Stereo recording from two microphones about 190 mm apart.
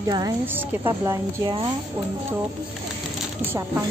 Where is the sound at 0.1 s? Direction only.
15° right (ahead or behind).